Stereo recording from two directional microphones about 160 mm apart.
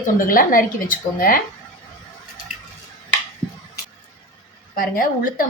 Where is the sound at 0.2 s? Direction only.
60° left (ahead or behind).